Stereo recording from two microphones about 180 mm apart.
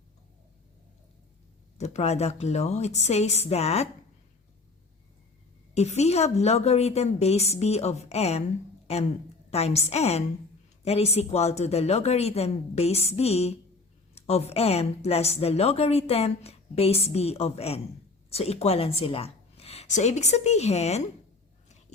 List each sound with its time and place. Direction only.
1.8 s a woman's voice: 40° left (ahead or behind)
5.7 s a woman's voice: 35° left (ahead or behind)
9.5 s a woman's voice: 35° left (ahead or behind)